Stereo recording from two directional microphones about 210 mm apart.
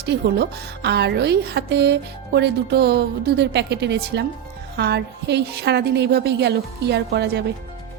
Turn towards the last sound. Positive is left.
turn(degrees=-55)  # may be behind; listen again after turning